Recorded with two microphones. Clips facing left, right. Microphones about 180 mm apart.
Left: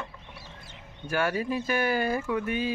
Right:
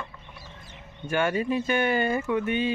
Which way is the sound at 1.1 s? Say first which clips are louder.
Right 3 dB; centre (ahead or behind).